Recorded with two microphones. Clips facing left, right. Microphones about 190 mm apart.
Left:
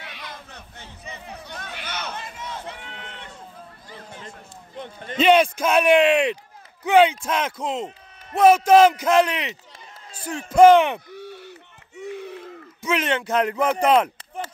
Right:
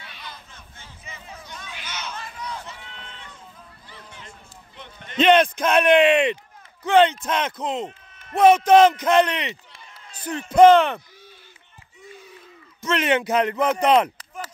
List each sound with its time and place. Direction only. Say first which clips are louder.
0.0 s a sound: left 3 dB; 75° left (ahead or behind)
1.2 s chatter: left 2 dB; 65° left (ahead or behind)
2.1 s crowd: even; 25° left (ahead or behind)
2.7 s run: left 3 dB; 70° left (ahead or behind)
3.9 s run: left 5 dB; 40° left (ahead or behind)
4.7 s a sound: left 2 dB; 45° left (ahead or behind)
5.2 s speech: even; 5° left (ahead or behind)
11.1 s a sound: left 13 dB; 65° left (ahead or behind)
13.3 s speech: even; centre (ahead or behind)